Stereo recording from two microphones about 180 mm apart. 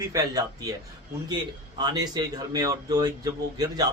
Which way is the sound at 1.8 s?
20° right (ahead or behind).